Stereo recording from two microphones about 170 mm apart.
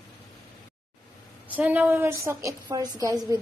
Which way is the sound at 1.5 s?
10° right (ahead or behind).